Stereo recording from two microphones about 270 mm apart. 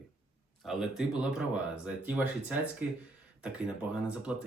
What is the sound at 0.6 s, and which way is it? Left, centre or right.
Speech, centre.